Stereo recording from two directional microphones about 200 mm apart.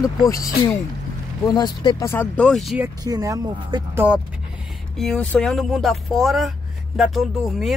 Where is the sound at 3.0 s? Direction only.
15° right (ahead or behind).